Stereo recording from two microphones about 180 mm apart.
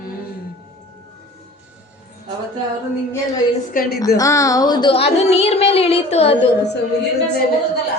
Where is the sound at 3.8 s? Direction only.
50° left (ahead or behind).